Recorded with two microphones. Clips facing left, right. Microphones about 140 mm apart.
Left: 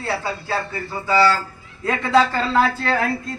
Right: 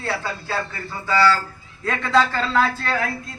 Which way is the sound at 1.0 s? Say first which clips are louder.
Left 1 dB; 15° left (ahead or behind).